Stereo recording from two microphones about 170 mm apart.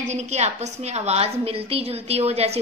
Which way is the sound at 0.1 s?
40° right (ahead or behind).